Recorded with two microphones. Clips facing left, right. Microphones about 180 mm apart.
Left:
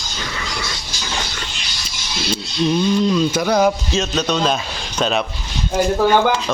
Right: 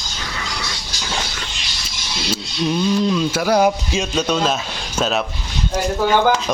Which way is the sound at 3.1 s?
5° right (ahead or behind).